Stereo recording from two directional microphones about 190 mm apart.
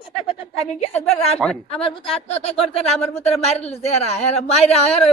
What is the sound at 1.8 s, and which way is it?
Speech, 30° left (ahead or behind).